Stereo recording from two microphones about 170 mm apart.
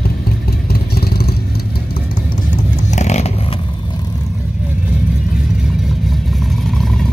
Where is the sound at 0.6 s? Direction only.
65° left (ahead or behind).